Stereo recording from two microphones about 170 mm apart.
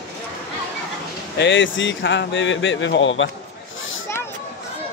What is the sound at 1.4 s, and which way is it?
Speech, 90° left.